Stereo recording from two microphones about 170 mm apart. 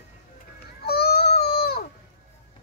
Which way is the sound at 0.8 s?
65° left (ahead or behind).